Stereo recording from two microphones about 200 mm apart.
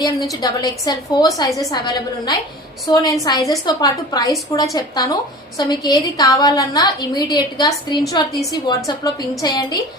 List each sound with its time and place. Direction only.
0.4 s a woman's voice: 20° left (ahead or behind)